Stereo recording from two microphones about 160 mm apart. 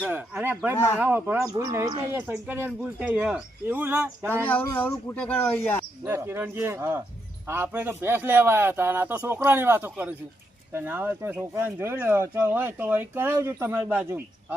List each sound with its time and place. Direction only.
0.1 s speech: 10° right (ahead or behind); by 2.0 s 25° right (ahead or behind)
2.2 s speech: 15° right (ahead or behind)
4.4 s speech: 10° left (ahead or behind)
6.1 s speech: 15° right (ahead or behind)